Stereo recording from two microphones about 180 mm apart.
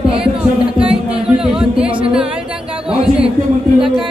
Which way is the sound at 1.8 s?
30° right (ahead or behind).